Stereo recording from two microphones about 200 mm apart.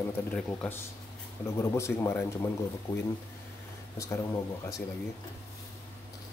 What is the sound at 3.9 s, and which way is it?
Speech, 15° left (ahead or behind).